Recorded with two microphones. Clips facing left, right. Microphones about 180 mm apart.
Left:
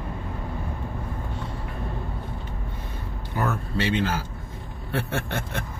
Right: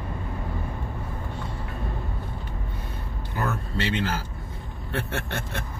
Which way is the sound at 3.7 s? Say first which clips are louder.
Left 3 dB; 15° left (ahead or behind).